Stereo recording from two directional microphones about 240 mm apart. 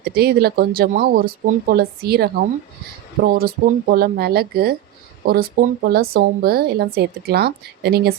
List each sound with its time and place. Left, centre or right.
0.0 s a woman's voice: right